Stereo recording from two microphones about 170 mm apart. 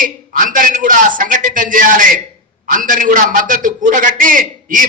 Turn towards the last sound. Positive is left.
turn(degrees=-50)  # may be behind; listen again after turning